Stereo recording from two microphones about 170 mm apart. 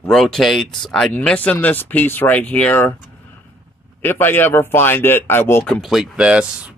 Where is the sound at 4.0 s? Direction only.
10° left (ahead or behind).